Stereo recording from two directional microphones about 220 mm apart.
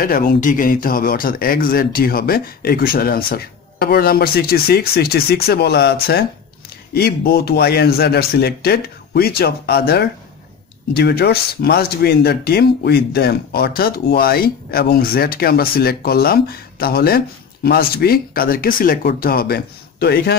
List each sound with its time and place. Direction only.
0.0 s speech: 40° left (ahead or behind)